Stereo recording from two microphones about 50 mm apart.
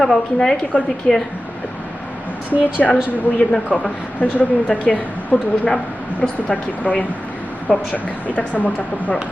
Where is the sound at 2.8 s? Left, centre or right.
Centre.